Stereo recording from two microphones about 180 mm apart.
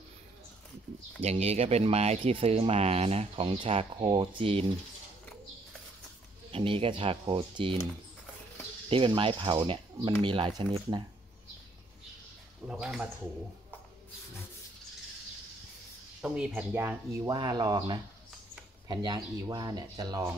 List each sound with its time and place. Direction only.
1.2 s speech: 35° right (ahead or behind)
6.5 s speech: 30° right (ahead or behind)
8.8 s speech: 30° right (ahead or behind)
12.6 s speech: 5° right (ahead or behind)
16.2 s speech: 5° right (ahead or behind); by 20.2 s 20° right (ahead or behind)